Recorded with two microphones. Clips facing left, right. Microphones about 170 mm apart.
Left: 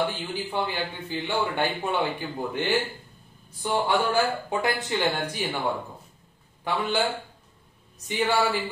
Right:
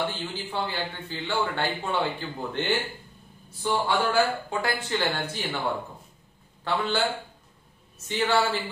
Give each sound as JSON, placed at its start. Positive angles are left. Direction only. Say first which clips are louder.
{"t": 0.0, "sound": "a man's voice", "louder": "left 2 dB", "side_deg": 15}
{"t": 6.6, "sound": "a man's voice", "louder": "even", "side_deg": 15}
{"t": 8.1, "sound": "a man's voice", "louder": "even", "side_deg": 10}